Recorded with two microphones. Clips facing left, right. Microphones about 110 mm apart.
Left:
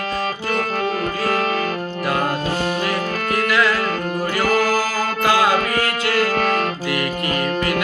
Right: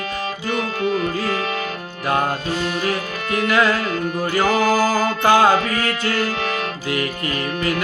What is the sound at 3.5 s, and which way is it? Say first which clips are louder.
Music: right 2 dB; 30° right (ahead or behind).